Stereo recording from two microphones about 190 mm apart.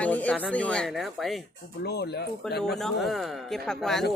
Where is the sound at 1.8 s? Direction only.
60° left (ahead or behind).